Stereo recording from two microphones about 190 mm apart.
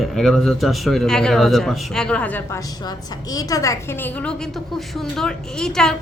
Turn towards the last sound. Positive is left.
turn(degrees=5)  # may be behind; listen again after turning